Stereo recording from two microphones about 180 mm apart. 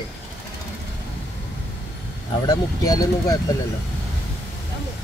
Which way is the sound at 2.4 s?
20° left (ahead or behind).